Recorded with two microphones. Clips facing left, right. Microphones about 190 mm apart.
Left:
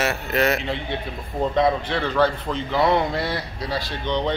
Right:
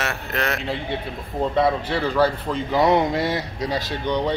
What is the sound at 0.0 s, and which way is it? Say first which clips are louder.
A man's voice: left 4 dB; 5° left (ahead or behind).